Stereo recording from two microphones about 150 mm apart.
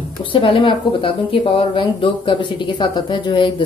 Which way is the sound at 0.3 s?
35° left (ahead or behind).